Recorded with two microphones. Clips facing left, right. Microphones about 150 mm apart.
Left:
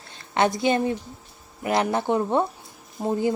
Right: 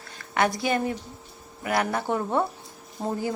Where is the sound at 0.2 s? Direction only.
25° left (ahead or behind).